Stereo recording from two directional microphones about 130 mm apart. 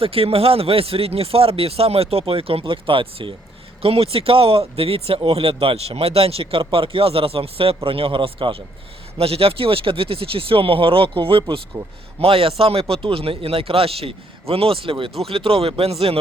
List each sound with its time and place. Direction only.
0.0 s speech: 45° right (ahead or behind)